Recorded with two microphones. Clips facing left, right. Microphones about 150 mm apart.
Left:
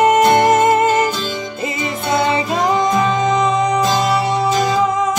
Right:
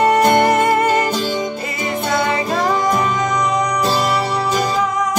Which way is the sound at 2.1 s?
25° left (ahead or behind).